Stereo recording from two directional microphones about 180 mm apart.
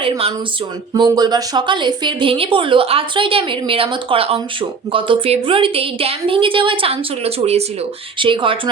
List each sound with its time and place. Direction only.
0.0 s a woman's voice: 30° right (ahead or behind)